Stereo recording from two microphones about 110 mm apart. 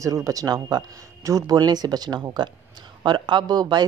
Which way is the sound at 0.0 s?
30° right (ahead or behind).